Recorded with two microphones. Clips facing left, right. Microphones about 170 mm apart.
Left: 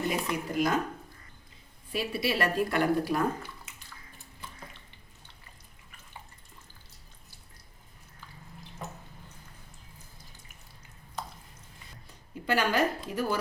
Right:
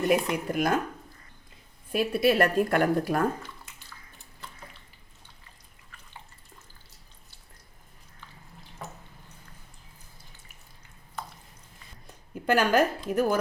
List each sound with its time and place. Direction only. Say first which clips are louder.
0.1 s speech: right 6 dB; 55° right (ahead or behind)
1.9 s a woman's voice: right 7 dB; 55° right (ahead or behind)
12.3 s a woman's voice: right 5 dB; 50° right (ahead or behind)